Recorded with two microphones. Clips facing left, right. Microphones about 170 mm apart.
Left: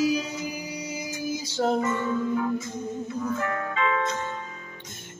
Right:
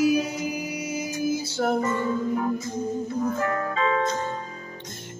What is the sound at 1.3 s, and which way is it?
Music, 15° left (ahead or behind).